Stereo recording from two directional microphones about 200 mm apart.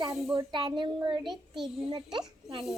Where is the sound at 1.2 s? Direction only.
Centre (ahead or behind).